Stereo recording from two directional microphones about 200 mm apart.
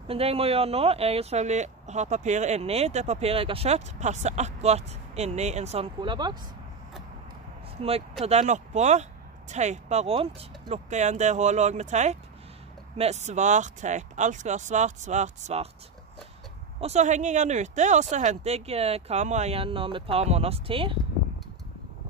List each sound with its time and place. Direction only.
0.1 s speech: 30° right (ahead or behind)
5.9 s speech: 20° right (ahead or behind)
7.8 s speech: 30° right (ahead or behind)
16.8 s speech: 35° right (ahead or behind)